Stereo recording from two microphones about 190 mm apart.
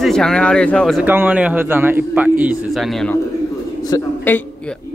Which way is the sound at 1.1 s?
10° right (ahead or behind).